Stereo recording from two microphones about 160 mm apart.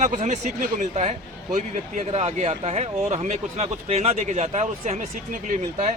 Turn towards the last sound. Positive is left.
turn(degrees=-50)  # may be behind; listen again after turning